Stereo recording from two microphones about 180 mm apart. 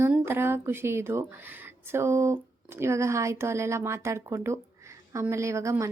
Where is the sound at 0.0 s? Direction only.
15° right (ahead or behind).